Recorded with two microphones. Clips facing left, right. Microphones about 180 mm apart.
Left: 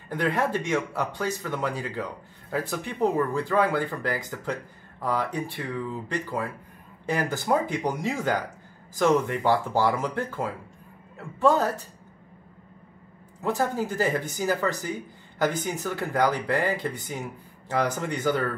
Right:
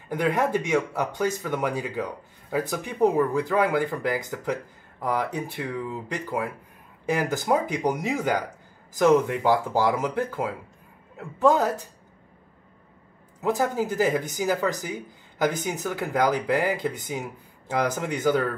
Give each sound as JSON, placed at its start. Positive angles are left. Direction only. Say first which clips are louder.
{"t": 0.1, "sound": "speech", "louder": "right 2 dB", "side_deg": -15}
{"t": 13.4, "sound": "speech", "louder": "right 2 dB", "side_deg": -15}